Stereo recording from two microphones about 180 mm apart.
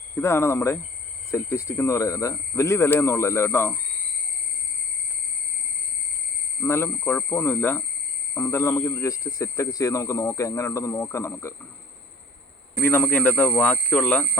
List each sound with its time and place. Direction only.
0.2 s speech: 15° left (ahead or behind)
6.6 s speech: 15° left (ahead or behind)
12.8 s speech: 10° left (ahead or behind)